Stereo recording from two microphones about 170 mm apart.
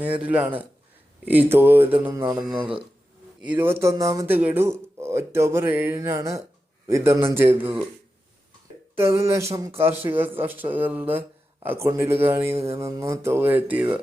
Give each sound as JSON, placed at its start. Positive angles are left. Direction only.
{"t": 0.0, "sound": "speech", "side_deg": -10}
{"t": 3.4, "sound": "speech", "side_deg": -15}
{"t": 9.0, "sound": "speech", "side_deg": -15}